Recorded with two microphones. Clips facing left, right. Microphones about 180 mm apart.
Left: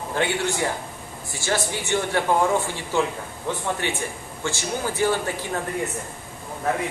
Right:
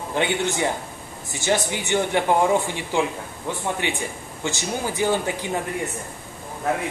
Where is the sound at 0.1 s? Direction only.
20° right (ahead or behind).